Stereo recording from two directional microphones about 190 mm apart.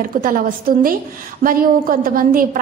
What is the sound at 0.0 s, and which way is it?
A woman's voice, 45° right (ahead or behind).